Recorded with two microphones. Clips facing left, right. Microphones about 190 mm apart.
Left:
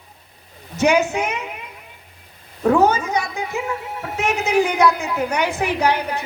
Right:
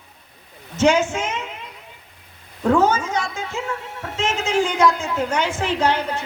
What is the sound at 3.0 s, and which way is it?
A woman's voice, 15° left (ahead or behind).